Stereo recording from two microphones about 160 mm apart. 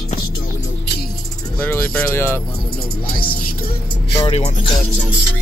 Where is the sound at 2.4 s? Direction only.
30° left (ahead or behind).